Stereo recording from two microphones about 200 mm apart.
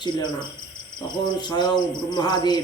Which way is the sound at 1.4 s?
20° left (ahead or behind).